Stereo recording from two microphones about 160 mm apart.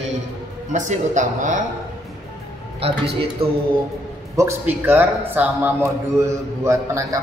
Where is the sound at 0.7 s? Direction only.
50° right (ahead or behind).